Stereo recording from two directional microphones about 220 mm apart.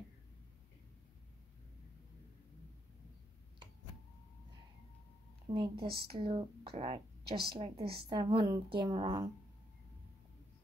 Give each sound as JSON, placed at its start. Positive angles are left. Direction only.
{"t": 5.5, "sound": "a woman's voice", "side_deg": -20}